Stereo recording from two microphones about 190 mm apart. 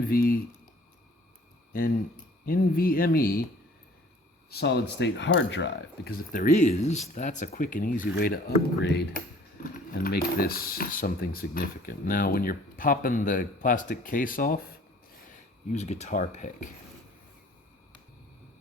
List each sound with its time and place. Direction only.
0.0 s speech: 50° left (ahead or behind)
1.7 s speech: 50° left (ahead or behind)
4.4 s speech: 60° left (ahead or behind)
6.3 s speech: 40° left (ahead or behind)
15.7 s speech: 35° left (ahead or behind)